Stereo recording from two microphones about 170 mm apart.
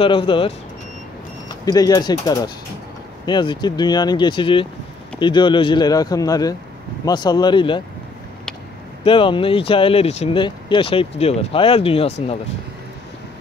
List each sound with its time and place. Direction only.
0.0 s speech: 30° left (ahead or behind)
1.7 s speech: 25° left (ahead or behind)
9.0 s speech: 30° left (ahead or behind)